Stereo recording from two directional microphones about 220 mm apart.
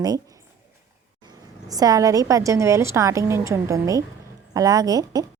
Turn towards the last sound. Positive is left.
turn(degrees=-15)  # may be behind; listen again after turning